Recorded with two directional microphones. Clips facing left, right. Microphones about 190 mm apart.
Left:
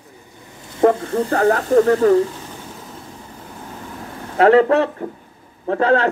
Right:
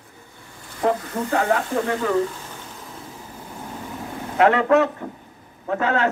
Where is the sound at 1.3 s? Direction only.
40° left (ahead or behind).